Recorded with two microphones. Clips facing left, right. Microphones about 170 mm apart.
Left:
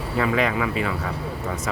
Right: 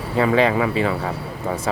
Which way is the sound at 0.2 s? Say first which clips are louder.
Right 5 dB; 30° right (ahead or behind).